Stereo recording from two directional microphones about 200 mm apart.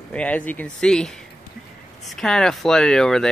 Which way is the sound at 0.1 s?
5° left (ahead or behind).